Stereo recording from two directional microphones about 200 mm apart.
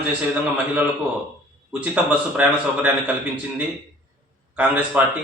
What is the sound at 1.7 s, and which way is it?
A man's voice, 5° right (ahead or behind).